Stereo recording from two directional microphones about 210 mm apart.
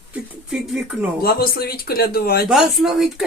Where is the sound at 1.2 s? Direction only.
45° left (ahead or behind).